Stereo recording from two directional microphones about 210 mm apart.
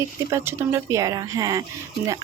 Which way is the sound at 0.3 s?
10° right (ahead or behind).